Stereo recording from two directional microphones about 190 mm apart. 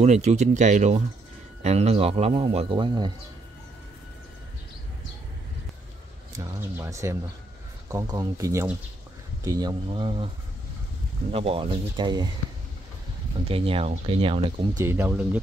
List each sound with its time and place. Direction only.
0.0 s a man's voice: 35° right (ahead or behind)
6.3 s speech: 15° right (ahead or behind)
11.3 s speech: 30° right (ahead or behind)
13.5 s speech: 30° right (ahead or behind); by 15.4 s 10° right (ahead or behind)